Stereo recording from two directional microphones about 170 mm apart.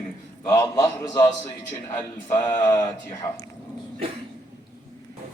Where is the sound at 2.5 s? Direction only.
15° left (ahead or behind).